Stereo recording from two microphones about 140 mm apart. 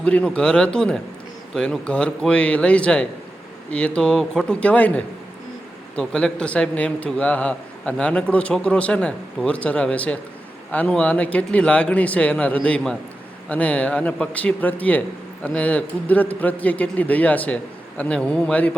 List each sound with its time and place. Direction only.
0.0 s a man's voice: 10° left (ahead or behind)